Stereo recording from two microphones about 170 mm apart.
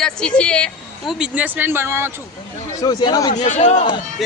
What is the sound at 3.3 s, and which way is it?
Speech, 45° left (ahead or behind).